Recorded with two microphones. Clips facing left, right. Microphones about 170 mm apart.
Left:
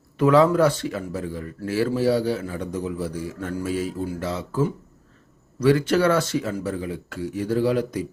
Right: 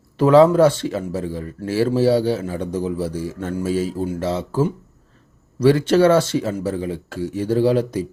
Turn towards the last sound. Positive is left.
turn(degrees=-30)  # may be behind; listen again after turning